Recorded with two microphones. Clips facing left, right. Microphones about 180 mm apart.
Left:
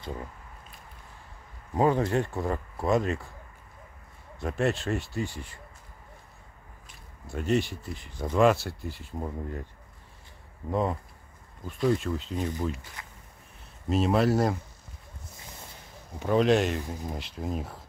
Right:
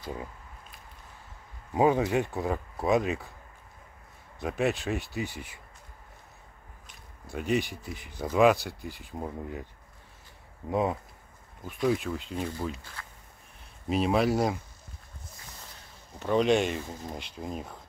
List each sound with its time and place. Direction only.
1.7 s speech: 10° right (ahead or behind)
4.4 s speech: centre (ahead or behind)
7.2 s speech: centre (ahead or behind)
10.7 s speech: 15° right (ahead or behind)
11.6 s speech: centre (ahead or behind)
13.0 s a sound: 15° left (ahead or behind)
13.8 s speech: 10° right (ahead or behind)
16.2 s speech: centre (ahead or behind)